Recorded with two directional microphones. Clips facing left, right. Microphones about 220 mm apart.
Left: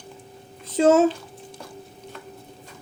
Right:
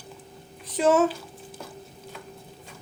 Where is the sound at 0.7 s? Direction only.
25° left (ahead or behind).